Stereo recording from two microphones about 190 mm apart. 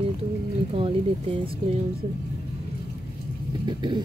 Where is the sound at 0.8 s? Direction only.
30° right (ahead or behind).